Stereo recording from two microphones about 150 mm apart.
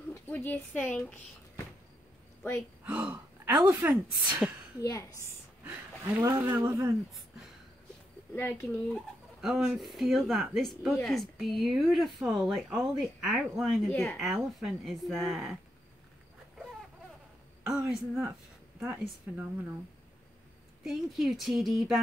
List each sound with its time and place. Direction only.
0.1 s speech: 10° left (ahead or behind)
2.8 s speech: 10° right (ahead or behind)
5.7 s a woman's voice: 15° right (ahead or behind)
8.4 s speech: 15° left (ahead or behind)
8.8 s speech: centre (ahead or behind)
17.6 s a woman's voice: 5° right (ahead or behind)
20.8 s speech: centre (ahead or behind)